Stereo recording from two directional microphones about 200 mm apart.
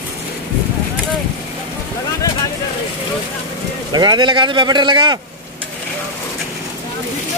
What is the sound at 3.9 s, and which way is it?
Speech, 20° right (ahead or behind).